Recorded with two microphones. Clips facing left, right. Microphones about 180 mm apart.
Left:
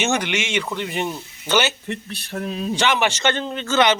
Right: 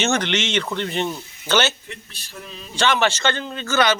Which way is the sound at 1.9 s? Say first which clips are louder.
Left 10 dB; 60° left (ahead or behind).